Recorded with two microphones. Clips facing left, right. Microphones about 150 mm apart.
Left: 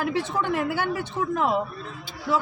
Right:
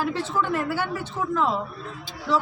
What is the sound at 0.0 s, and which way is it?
Speech, 65° left (ahead or behind).